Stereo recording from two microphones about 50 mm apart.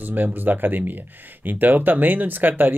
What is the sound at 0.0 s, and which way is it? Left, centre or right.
Speech, right.